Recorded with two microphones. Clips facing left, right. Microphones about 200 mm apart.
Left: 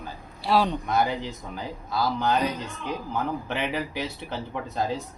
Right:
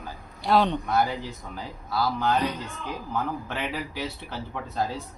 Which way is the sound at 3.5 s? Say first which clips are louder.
Left 3 dB; 20° left (ahead or behind).